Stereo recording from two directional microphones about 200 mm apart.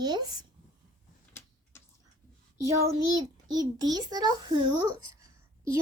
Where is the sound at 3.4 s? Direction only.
20° right (ahead or behind).